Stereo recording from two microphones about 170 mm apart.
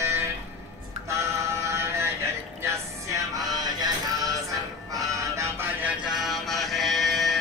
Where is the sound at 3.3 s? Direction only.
25° right (ahead or behind).